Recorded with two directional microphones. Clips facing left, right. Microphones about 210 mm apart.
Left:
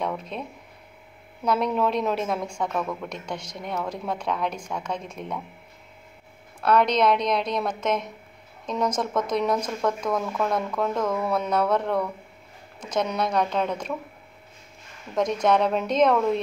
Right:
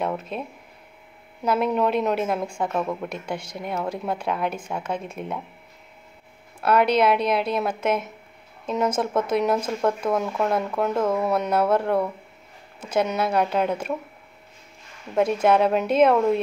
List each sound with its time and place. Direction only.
0.0 s a woman's voice: 5° right (ahead or behind)
2.7 s speech: 25° right (ahead or behind)
3.0 s a woman's voice: 5° right (ahead or behind)
6.6 s a woman's voice: 5° right (ahead or behind)
15.1 s a woman's voice: 5° right (ahead or behind)